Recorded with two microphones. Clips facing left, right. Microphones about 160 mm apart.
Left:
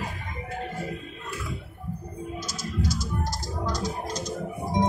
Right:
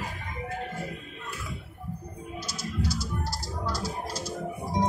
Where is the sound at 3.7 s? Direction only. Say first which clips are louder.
Left 2 dB; 5° right (ahead or behind).